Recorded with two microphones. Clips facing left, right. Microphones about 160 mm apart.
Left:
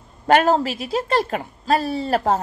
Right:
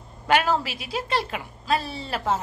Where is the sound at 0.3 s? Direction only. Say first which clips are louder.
Left 6 dB; 45° left (ahead or behind).